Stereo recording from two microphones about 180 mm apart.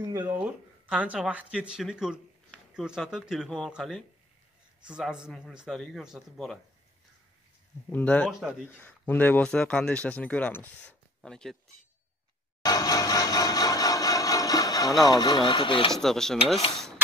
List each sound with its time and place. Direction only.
0.4 s a man's voice: 5° right (ahead or behind)
7.9 s speech: 10° left (ahead or behind)
8.3 s a man's voice: 5° right (ahead or behind)
8.6 s speech: 10° left (ahead or behind)
12.6 s a sound: 20° left (ahead or behind)
15.0 s speech: 20° left (ahead or behind)
15.9 s a man's voice: centre (ahead or behind)